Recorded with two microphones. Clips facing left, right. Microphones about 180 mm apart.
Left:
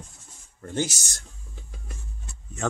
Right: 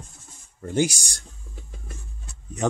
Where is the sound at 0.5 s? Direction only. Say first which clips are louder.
Right 5 dB; 15° right (ahead or behind).